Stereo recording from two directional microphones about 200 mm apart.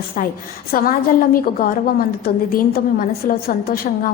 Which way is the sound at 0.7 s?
45° left (ahead or behind).